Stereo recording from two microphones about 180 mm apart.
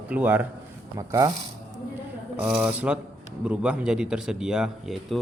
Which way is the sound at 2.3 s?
5° right (ahead or behind).